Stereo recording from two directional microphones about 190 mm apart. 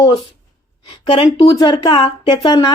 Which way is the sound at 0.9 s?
30° left (ahead or behind).